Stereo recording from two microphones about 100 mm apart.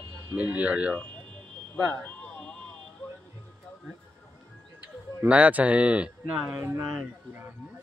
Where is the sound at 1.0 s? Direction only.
15° left (ahead or behind).